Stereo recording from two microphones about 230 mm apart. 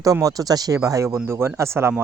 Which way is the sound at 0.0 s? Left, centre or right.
Centre.